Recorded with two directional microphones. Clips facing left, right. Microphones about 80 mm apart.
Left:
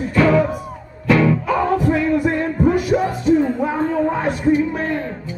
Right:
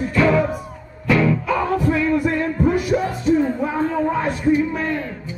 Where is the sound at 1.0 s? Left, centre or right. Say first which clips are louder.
Left 2 dB; left.